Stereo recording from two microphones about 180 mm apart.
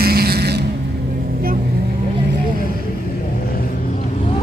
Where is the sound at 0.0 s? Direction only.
60° right (ahead or behind).